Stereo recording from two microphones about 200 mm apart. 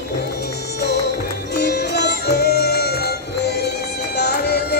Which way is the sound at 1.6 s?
55° left (ahead or behind).